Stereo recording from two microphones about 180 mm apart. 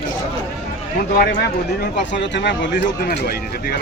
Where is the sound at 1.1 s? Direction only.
55° left (ahead or behind).